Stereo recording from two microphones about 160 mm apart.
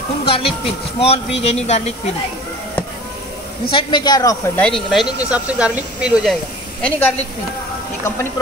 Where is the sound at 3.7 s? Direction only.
30° left (ahead or behind).